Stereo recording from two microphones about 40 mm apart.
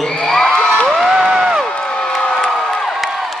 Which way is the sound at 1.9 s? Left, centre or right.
Left.